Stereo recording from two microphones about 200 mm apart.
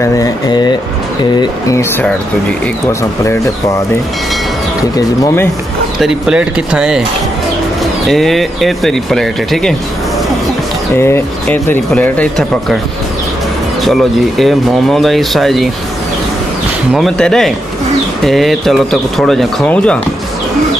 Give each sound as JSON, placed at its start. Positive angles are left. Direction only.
{"t": 0.0, "sound": "speech", "side_deg": 20}
{"t": 4.9, "sound": "speech", "side_deg": 15}
{"t": 5.9, "sound": "speech", "side_deg": -5}
{"t": 8.1, "sound": "speech", "side_deg": 0}
{"t": 11.0, "sound": "speech", "side_deg": 10}
{"t": 13.8, "sound": "speech", "side_deg": 0}
{"t": 16.9, "sound": "speech", "side_deg": 0}